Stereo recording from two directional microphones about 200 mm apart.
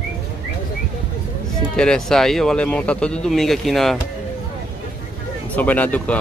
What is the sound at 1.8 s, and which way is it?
Speech, 5° left (ahead or behind).